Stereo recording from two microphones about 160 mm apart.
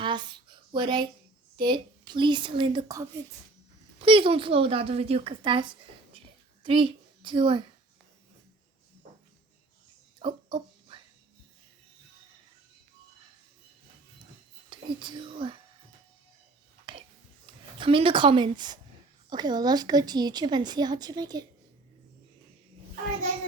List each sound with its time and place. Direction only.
0.0 s a sound: 30° right (ahead or behind)
1.5 s a woman's voice: 30° right (ahead or behind)
10.2 s a sound: 30° right (ahead or behind)
14.7 s speech: 30° right (ahead or behind)
16.9 s whispering: 30° right (ahead or behind)
17.7 s a woman's voice: 35° right (ahead or behind)